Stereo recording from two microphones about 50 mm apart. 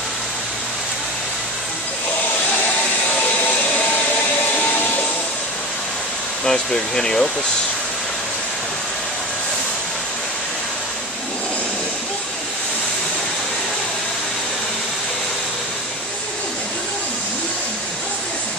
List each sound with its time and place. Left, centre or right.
3.3 s vacuum cleaner: left
4.6 s a sound: left
6.4 s speech: centre